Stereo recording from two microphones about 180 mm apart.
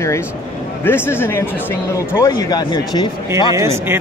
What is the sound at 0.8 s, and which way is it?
Speech, 10° left (ahead or behind).